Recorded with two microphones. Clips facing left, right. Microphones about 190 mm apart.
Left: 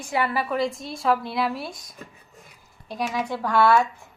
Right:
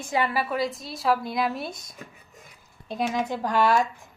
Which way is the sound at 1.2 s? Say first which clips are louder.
Left 1 dB; 15° right (ahead or behind).